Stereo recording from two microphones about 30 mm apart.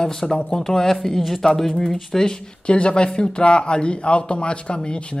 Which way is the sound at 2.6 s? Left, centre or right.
Left.